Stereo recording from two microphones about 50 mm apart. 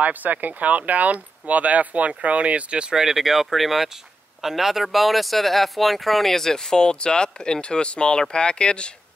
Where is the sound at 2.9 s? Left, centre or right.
Centre.